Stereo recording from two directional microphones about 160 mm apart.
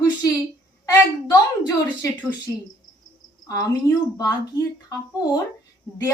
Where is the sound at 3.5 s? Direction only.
20° left (ahead or behind).